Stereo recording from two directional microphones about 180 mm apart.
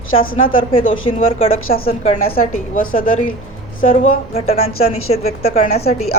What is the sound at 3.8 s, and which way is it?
A woman's voice, 35° left (ahead or behind).